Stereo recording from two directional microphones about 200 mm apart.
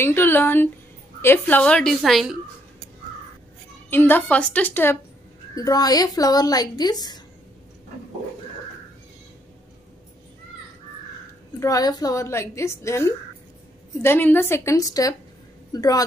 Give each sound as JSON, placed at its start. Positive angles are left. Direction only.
{"t": 0.0, "sound": "a woman's voice", "side_deg": 10}
{"t": 3.9, "sound": "a woman's voice", "side_deg": 10}
{"t": 11.6, "sound": "a woman's voice", "side_deg": 20}